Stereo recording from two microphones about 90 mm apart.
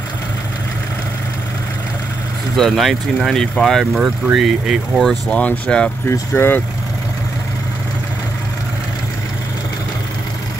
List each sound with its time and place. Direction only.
2.5 s speech: 5° left (ahead or behind)
5.3 s speech: 15° left (ahead or behind)
6.0 s speech: 25° left (ahead or behind)